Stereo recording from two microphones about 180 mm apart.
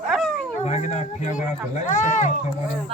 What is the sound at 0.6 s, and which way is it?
Speech, 40° left (ahead or behind).